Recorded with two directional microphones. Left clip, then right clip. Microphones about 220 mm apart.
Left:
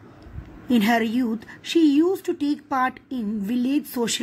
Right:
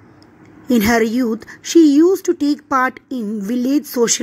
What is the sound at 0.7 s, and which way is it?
A woman's voice, 25° right (ahead or behind).